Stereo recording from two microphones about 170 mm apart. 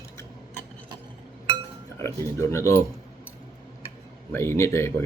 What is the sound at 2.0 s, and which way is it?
Speech, 15° left (ahead or behind).